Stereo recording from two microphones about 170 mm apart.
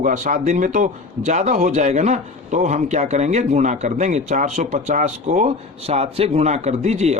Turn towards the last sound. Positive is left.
turn(degrees=-40)  # may be behind; listen again after turning